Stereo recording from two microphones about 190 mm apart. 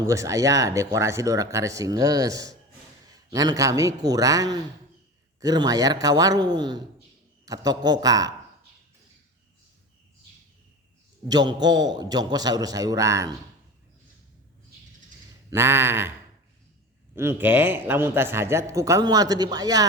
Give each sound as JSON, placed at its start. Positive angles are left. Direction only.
{"t": 0.1, "sound": "a man's voice", "side_deg": -15}
{"t": 11.3, "sound": "a man's voice", "side_deg": -20}
{"t": 15.4, "sound": "a man's voice", "side_deg": -15}
{"t": 17.2, "sound": "a man's voice", "side_deg": -10}